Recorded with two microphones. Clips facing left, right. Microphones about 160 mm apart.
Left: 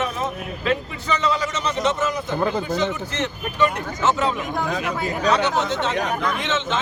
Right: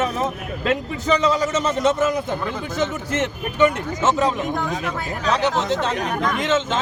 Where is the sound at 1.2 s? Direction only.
45° right (ahead or behind).